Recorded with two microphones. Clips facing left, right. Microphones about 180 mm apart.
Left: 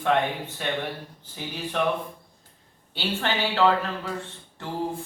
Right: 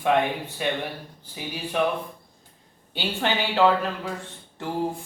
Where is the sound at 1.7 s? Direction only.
10° right (ahead or behind).